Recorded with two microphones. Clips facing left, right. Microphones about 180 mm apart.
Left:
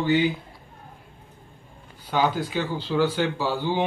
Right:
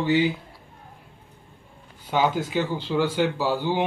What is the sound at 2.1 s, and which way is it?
Speech, 15° right (ahead or behind).